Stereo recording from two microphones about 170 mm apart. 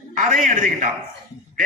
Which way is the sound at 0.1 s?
50° right (ahead or behind).